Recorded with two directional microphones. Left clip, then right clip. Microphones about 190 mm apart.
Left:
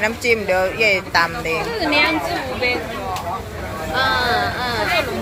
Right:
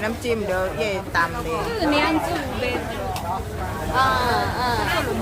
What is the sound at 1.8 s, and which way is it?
Speech, 25° right (ahead or behind).